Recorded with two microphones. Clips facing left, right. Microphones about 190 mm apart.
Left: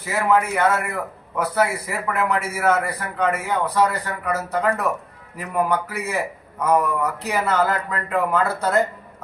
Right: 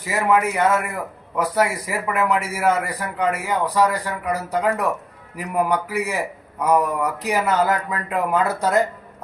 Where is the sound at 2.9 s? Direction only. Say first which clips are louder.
Even; 15° right (ahead or behind).